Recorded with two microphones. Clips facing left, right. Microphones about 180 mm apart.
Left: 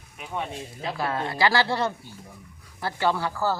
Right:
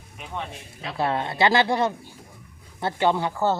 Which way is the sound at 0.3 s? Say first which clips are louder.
Left 2 dB; 10° left (ahead or behind).